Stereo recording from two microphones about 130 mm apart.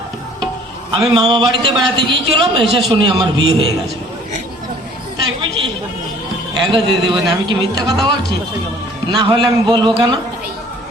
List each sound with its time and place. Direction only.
1.2 s a man's voice: 35° right (ahead or behind)
5.4 s a man's voice: 40° right (ahead or behind)
9.0 s a man's voice: 40° right (ahead or behind)